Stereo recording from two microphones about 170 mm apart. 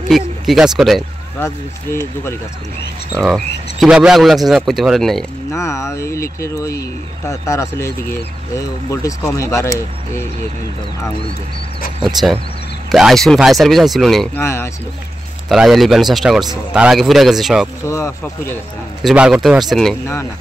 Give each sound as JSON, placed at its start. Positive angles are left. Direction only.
{"t": 0.1, "sound": "speech", "side_deg": 0}
{"t": 1.4, "sound": "speech", "side_deg": 15}
{"t": 3.2, "sound": "speech", "side_deg": 0}
{"t": 5.5, "sound": "speech", "side_deg": 15}
{"t": 12.9, "sound": "speech", "side_deg": 0}
{"t": 14.4, "sound": "speech", "side_deg": 15}
{"t": 15.4, "sound": "speech", "side_deg": 0}
{"t": 17.8, "sound": "speech", "side_deg": 15}
{"t": 19.0, "sound": "speech", "side_deg": -5}